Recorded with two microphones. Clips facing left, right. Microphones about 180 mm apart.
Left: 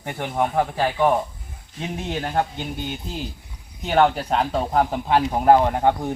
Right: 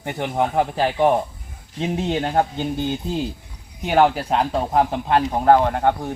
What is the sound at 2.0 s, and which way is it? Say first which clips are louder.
Speech: right 2 dB; 25° right (ahead or behind).